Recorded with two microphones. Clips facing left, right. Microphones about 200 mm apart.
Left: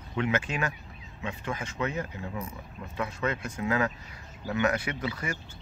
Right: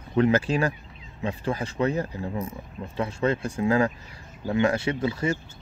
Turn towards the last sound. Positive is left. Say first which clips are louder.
# right 8 dB
turn(degrees=-25)  # may be behind; listen again after turning